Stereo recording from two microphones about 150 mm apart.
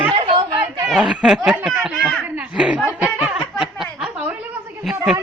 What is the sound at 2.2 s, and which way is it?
Laughter, 10° right (ahead or behind).